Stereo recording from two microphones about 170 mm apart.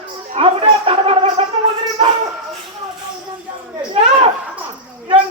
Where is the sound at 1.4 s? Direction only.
35° right (ahead or behind).